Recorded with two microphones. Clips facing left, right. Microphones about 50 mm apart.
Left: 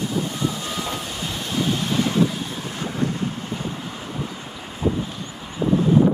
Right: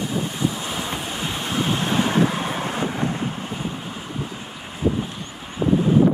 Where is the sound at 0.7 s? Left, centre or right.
Right.